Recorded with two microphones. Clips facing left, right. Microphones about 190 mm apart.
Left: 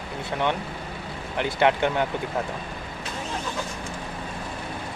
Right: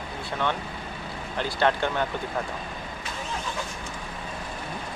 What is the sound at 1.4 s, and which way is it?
Speech, 15° left (ahead or behind).